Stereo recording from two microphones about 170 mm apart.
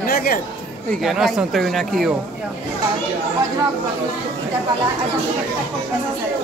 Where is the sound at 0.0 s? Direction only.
60° left (ahead or behind).